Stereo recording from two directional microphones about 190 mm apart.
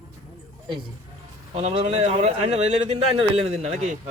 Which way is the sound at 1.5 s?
30° right (ahead or behind).